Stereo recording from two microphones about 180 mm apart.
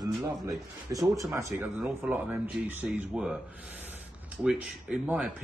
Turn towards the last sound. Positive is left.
turn(degrees=-5)  # may be behind; listen again after turning